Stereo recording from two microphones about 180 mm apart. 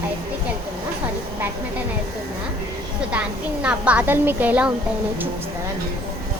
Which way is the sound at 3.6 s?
5° right (ahead or behind).